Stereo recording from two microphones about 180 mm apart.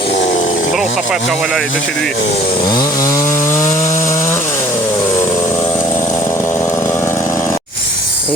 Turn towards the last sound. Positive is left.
turn(degrees=15)  # may be behind; listen again after turning